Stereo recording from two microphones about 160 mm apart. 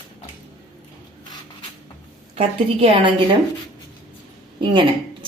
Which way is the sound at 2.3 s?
40° right (ahead or behind).